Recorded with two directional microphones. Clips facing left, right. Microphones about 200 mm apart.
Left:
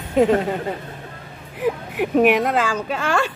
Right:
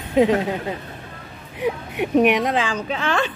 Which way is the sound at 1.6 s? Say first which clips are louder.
Left 1 dB; 5° left (ahead or behind).